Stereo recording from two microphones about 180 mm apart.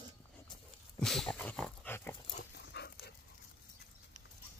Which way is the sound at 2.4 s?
70° left (ahead or behind).